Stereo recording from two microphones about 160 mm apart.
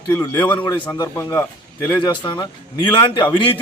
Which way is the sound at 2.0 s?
30° left (ahead or behind).